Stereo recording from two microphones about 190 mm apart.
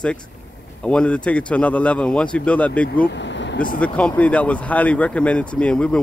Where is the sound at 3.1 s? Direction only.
70° left (ahead or behind).